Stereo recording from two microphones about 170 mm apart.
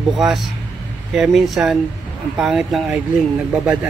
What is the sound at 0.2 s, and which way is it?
Speech, centre (ahead or behind).